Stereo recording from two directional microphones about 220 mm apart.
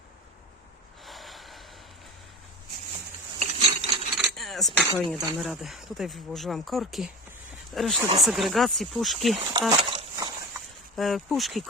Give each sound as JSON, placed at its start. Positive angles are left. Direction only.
{"t": 1.0, "sound": "snort", "side_deg": 0}
{"t": 3.3, "sound": "a sound", "side_deg": -30}
{"t": 4.2, "sound": "keys jangling", "side_deg": 0}
{"t": 5.4, "sound": "speech", "side_deg": 0}
{"t": 7.9, "sound": "speech", "side_deg": -20}
{"t": 8.2, "sound": "speech", "side_deg": 0}
{"t": 9.5, "sound": "a sound", "side_deg": -20}
{"t": 10.9, "sound": "speech", "side_deg": 0}